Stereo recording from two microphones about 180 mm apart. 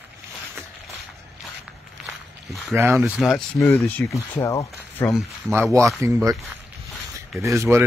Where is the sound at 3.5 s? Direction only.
15° left (ahead or behind).